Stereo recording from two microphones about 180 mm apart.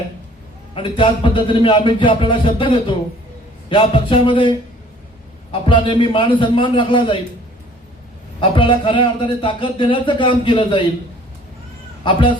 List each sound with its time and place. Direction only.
0.7 s speech: 30° left (ahead or behind)
8.4 s speech: 25° left (ahead or behind)
12.0 s speech: 25° left (ahead or behind)